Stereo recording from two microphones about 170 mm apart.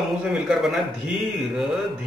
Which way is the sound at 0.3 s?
Centre (ahead or behind).